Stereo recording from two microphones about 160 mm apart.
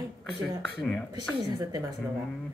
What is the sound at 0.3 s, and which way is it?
Speech, 5° left (ahead or behind).